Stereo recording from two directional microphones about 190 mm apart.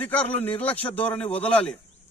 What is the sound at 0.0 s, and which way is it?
A man's voice, 10° left (ahead or behind).